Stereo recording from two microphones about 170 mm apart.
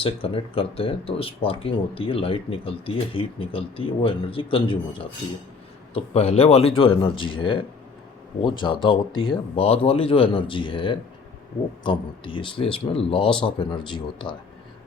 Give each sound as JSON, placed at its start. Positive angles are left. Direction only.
{"t": 0.0, "sound": "speech", "side_deg": 35}
{"t": 5.9, "sound": "speech", "side_deg": 35}